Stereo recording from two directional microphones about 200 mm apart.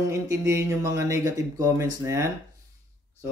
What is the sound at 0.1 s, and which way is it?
A man's voice, 15° right (ahead or behind).